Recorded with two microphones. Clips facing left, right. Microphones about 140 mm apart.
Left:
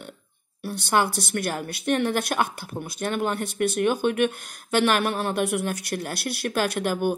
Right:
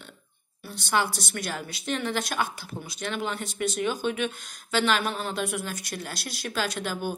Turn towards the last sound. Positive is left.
turn(degrees=55)  # may be behind; listen again after turning